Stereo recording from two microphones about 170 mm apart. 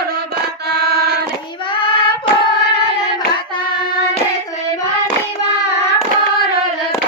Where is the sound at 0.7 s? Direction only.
70° right (ahead or behind).